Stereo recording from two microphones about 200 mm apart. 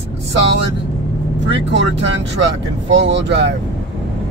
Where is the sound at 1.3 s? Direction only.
65° right (ahead or behind).